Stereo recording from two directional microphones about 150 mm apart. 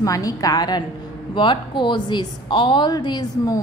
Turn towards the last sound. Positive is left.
turn(degrees=25)  # may be behind; listen again after turning